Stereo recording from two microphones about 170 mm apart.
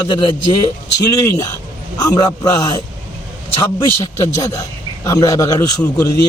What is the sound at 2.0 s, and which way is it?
Speech, 20° left (ahead or behind).